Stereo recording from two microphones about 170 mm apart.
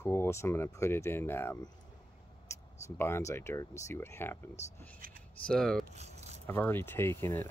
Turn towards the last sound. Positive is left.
turn(degrees=15)  # may be behind; listen again after turning